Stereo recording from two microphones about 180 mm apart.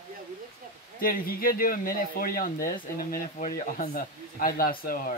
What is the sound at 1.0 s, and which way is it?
Speech, 55° left (ahead or behind).